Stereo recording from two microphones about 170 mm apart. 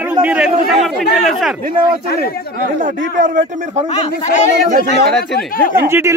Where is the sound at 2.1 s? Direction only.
65° left (ahead or behind).